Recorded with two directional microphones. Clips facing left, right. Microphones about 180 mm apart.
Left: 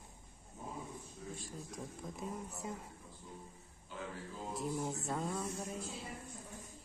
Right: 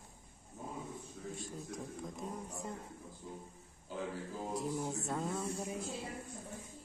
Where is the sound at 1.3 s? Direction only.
Centre (ahead or behind).